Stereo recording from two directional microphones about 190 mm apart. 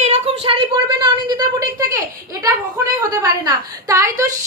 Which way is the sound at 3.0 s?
15° right (ahead or behind).